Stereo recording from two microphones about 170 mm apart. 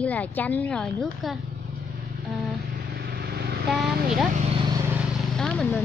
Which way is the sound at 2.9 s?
70° right (ahead or behind).